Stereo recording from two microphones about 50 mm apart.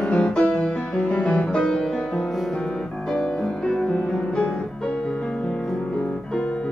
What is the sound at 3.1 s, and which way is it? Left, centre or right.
Music, centre.